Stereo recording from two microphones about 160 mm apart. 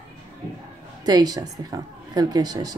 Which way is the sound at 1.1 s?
25° right (ahead or behind).